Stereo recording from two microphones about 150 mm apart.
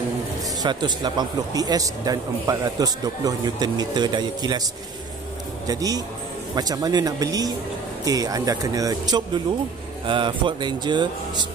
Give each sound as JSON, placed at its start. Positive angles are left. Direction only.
{"t": 0.6, "sound": "a man's voice", "side_deg": -30}
{"t": 5.7, "sound": "a man's voice", "side_deg": -25}